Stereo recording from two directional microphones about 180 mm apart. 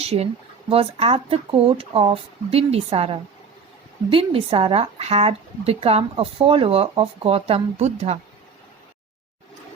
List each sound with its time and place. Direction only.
0.0 s speech: 35° right (ahead or behind)